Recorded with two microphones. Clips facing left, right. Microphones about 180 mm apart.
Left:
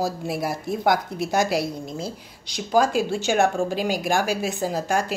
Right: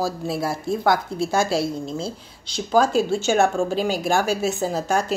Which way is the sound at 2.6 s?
10° left (ahead or behind).